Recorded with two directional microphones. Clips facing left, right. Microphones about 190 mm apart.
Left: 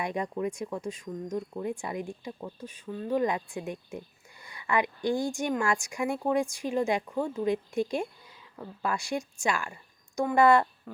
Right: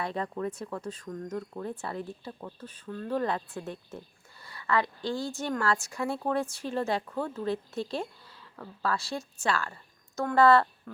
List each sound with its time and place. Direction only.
0.0 s a woman's voice: 15° left (ahead or behind)